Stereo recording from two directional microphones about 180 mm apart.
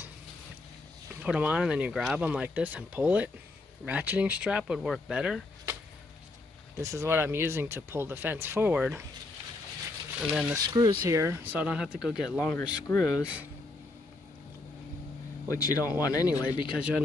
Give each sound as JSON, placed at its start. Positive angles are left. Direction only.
{"t": 1.2, "sound": "speech", "side_deg": -5}
{"t": 6.8, "sound": "speech", "side_deg": -15}
{"t": 10.5, "sound": "speech", "side_deg": -15}
{"t": 13.1, "sound": "speech", "side_deg": -5}
{"t": 15.4, "sound": "speech", "side_deg": 20}
{"t": 16.7, "sound": "speech", "side_deg": -5}